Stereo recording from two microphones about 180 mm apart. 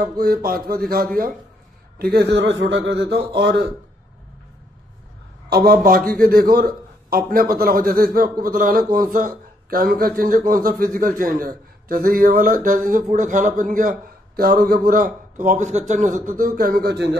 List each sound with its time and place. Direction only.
0.0 s a sound: 55° right (ahead or behind)
2.0 s speech: 60° right (ahead or behind)
5.7 s a man's voice: 55° right (ahead or behind)